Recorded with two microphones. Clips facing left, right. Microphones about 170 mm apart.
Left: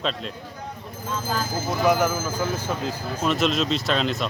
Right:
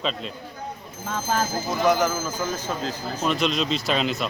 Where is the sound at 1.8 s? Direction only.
5° left (ahead or behind).